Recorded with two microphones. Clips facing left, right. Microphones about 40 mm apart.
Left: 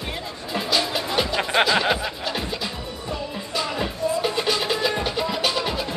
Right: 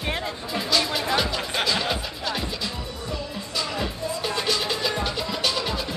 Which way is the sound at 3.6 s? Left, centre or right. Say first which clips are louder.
Left 3 dB; centre.